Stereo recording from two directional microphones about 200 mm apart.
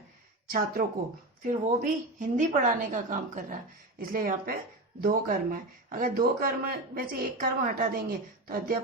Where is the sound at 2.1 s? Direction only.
40° right (ahead or behind).